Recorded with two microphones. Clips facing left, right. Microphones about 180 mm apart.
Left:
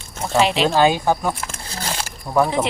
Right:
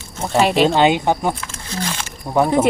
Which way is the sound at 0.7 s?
20° right (ahead or behind).